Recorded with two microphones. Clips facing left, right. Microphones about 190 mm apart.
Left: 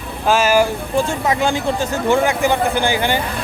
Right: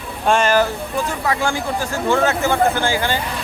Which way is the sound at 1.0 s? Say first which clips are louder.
Left 3 dB; 20° left (ahead or behind).